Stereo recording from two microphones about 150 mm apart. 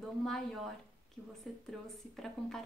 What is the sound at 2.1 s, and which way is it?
Speech, 5° left (ahead or behind).